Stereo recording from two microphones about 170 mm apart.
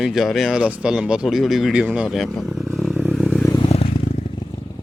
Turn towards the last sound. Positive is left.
turn(degrees=35)  # may be behind; listen again after turning